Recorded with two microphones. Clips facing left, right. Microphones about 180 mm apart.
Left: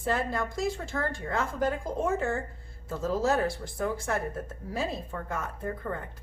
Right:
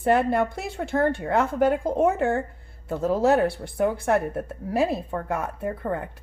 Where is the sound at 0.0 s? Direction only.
60° right (ahead or behind).